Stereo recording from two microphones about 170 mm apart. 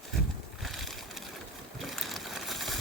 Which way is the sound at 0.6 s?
Centre (ahead or behind).